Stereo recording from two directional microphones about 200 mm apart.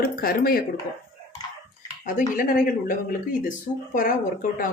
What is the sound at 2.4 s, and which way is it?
Speech, 45° left (ahead or behind).